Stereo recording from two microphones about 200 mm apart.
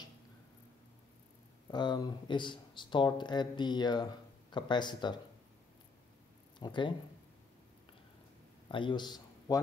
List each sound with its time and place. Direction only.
1.7 s speech: 20° left (ahead or behind)
6.6 s speech: 25° left (ahead or behind)
8.6 s a sound: 25° left (ahead or behind)